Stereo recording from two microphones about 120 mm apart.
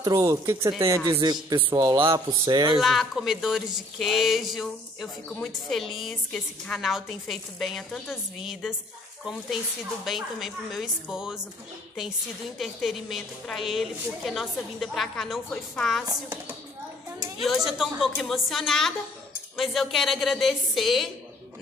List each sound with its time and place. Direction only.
0.0 s speech: 25° right (ahead or behind)
2.0 s speech: 45° right (ahead or behind)
2.8 s a woman's voice: centre (ahead or behind)
10.0 s a woman's voice: centre (ahead or behind)
12.5 s a woman's voice: centre (ahead or behind)
17.4 s a woman's voice: centre (ahead or behind)